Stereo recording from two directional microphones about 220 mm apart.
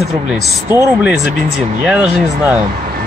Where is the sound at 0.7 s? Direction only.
5° right (ahead or behind).